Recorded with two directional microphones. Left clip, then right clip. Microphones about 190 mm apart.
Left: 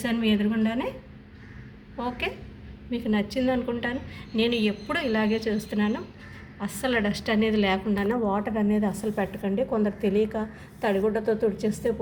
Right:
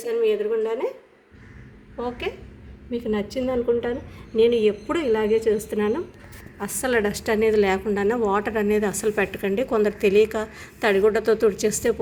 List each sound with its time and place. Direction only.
0.1 s a woman's voice: 30° right (ahead or behind)
2.0 s a woman's voice: 30° right (ahead or behind)